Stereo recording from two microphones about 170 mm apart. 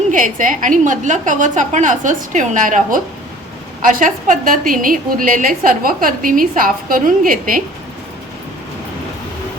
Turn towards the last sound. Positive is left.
turn(degrees=-55)  # may be behind; listen again after turning